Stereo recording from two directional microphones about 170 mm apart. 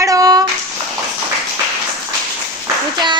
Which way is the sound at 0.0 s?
20° right (ahead or behind).